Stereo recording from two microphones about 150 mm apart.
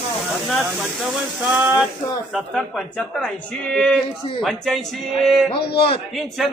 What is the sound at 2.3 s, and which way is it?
Speech, centre (ahead or behind).